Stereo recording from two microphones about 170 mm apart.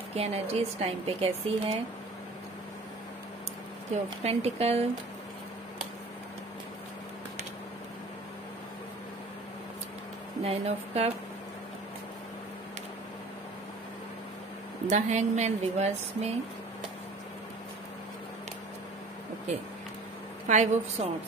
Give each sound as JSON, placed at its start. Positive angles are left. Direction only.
{"t": 0.1, "sound": "speech", "side_deg": -35}
{"t": 3.9, "sound": "speech", "side_deg": -40}
{"t": 10.4, "sound": "speech", "side_deg": -35}
{"t": 14.9, "sound": "speech", "side_deg": -45}
{"t": 20.4, "sound": "a woman's voice", "side_deg": -45}